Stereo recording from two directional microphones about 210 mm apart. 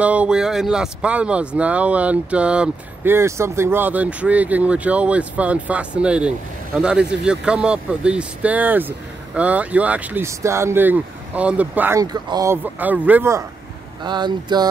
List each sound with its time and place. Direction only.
0.0 s speech: 5° right (ahead or behind)